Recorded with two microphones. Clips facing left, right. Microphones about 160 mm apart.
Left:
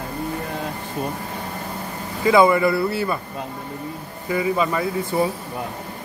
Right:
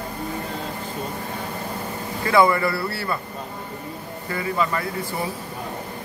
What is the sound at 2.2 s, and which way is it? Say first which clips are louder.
Speech: left 3 dB; 20° left (ahead or behind).